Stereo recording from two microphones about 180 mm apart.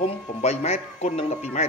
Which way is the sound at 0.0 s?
35° left (ahead or behind).